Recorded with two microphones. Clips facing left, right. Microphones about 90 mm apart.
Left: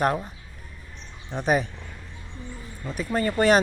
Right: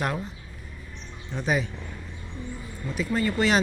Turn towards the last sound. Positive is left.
turn(degrees=45)  # may be behind; listen again after turning